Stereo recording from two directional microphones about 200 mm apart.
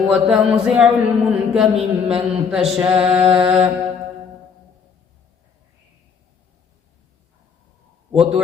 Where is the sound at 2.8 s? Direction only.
25° right (ahead or behind).